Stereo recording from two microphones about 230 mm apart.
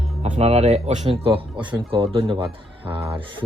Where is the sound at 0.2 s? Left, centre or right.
Right.